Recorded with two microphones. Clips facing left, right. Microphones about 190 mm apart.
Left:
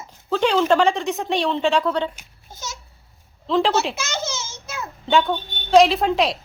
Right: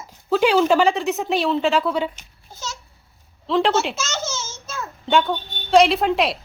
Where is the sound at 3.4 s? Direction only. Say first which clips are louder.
Even; centre (ahead or behind).